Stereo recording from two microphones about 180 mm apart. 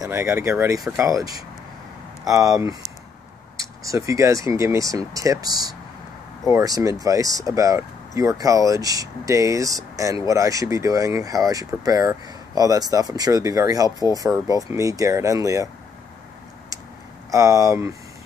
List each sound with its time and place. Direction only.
0.0 s speech: 15° right (ahead or behind)
17.3 s speech: 15° right (ahead or behind)